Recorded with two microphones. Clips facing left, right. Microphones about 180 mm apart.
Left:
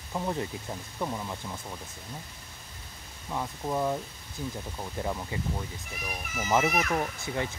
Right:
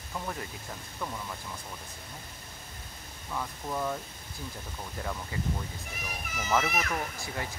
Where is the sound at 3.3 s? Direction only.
20° left (ahead or behind).